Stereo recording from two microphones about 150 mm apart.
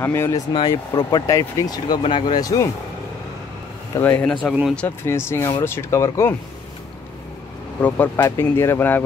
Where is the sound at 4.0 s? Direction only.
10° left (ahead or behind).